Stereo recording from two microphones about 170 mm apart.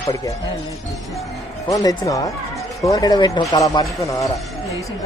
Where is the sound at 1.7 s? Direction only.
20° left (ahead or behind).